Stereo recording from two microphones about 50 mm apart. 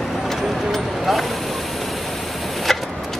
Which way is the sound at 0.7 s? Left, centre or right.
Centre.